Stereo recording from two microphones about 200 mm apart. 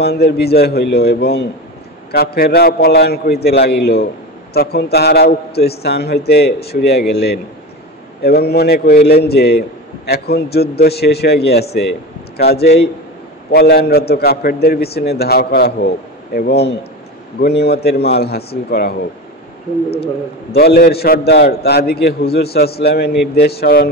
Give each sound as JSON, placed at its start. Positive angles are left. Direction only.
{"t": 0.0, "sound": "a man's voice", "side_deg": 55}
{"t": 20.5, "sound": "a man's voice", "side_deg": 50}